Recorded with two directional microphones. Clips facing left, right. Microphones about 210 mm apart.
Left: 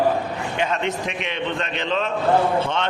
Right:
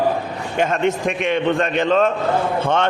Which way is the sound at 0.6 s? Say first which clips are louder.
Right 6 dB; 50° right (ahead or behind).